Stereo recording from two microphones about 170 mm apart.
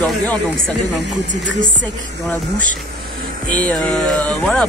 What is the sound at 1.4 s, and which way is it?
Music, 90° right.